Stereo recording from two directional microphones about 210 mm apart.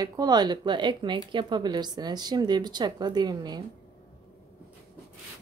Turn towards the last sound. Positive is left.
turn(degrees=-20)  # may be behind; listen again after turning